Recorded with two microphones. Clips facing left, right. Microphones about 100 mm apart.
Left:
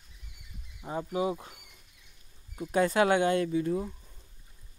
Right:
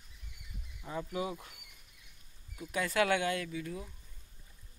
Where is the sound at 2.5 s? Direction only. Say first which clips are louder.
Left 6 dB; 35° left (ahead or behind).